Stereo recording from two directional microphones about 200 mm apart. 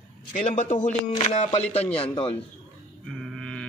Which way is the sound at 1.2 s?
25° left (ahead or behind).